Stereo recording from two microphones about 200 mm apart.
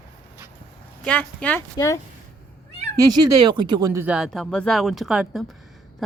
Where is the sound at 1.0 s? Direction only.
5° left (ahead or behind).